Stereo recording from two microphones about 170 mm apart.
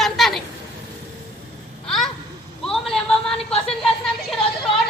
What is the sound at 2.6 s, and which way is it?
Speech, 5° left (ahead or behind).